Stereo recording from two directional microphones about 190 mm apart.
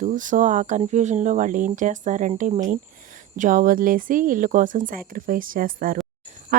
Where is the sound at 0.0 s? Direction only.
45° right (ahead or behind).